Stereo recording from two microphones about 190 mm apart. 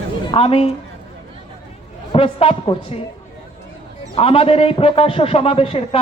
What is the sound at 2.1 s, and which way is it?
Speech, 30° left (ahead or behind).